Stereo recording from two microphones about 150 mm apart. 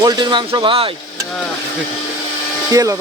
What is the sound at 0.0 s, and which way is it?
Speech, 30° right (ahead or behind).